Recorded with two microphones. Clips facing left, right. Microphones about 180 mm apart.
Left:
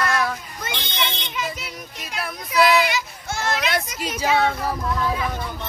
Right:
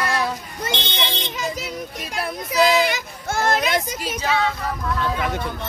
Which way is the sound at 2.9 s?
50° right (ahead or behind).